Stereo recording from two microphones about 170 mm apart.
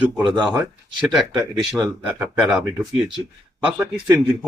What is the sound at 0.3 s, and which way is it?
A man's voice, 5° left (ahead or behind).